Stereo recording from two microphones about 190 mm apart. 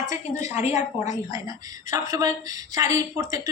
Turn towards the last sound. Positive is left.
turn(degrees=-20)  # may be behind; listen again after turning